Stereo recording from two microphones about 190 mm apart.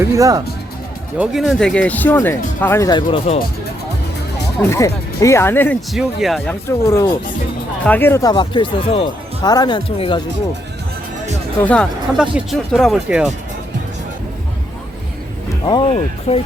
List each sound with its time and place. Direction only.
0.0 s speech: 15° right (ahead or behind)
1.2 s speech: centre (ahead or behind); by 3.4 s 30° left (ahead or behind)
4.6 s speech: 15° left (ahead or behind)
5.9 s speech: centre (ahead or behind); by 10.2 s 25° left (ahead or behind)
11.6 s speech: 5° left (ahead or behind)
16.3 s speech: 35° left (ahead or behind)